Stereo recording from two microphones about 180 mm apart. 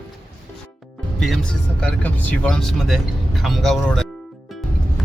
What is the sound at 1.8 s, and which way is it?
Speech, 10° left (ahead or behind).